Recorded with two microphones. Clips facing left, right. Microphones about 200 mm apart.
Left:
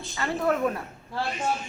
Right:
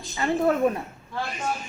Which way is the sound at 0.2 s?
25° right (ahead or behind).